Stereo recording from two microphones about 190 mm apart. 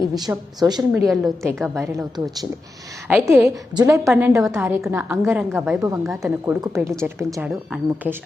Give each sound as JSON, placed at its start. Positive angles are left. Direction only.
{"t": 0.2, "sound": "a woman's voice", "side_deg": -20}
{"t": 0.8, "sound": "a woman's voice", "side_deg": 0}
{"t": 3.1, "sound": "a woman's voice", "side_deg": -10}
{"t": 6.0, "sound": "a woman's voice", "side_deg": 0}
{"t": 6.4, "sound": "a woman's voice", "side_deg": -15}
{"t": 7.5, "sound": "a woman's voice", "side_deg": -5}